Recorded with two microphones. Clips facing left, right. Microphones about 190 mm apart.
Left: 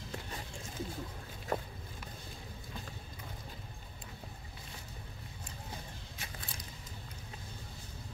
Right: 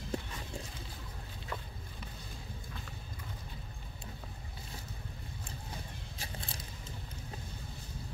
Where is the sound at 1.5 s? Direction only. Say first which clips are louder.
Left 7 dB; 50° left (ahead or behind).